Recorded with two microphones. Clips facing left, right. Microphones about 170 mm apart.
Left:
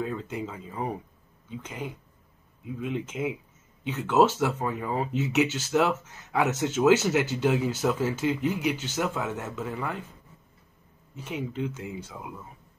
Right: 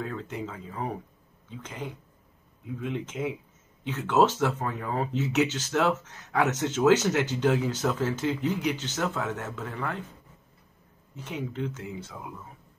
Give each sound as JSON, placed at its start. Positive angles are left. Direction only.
{"t": 0.0, "sound": "speech", "side_deg": 10}
{"t": 11.1, "sound": "speech", "side_deg": 10}